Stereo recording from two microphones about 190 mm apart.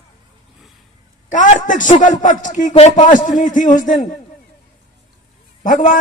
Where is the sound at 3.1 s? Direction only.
45° left (ahead or behind).